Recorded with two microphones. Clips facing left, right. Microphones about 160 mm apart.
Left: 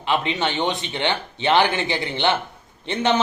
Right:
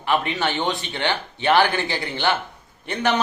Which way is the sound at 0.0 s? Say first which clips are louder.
Even; 20° left (ahead or behind).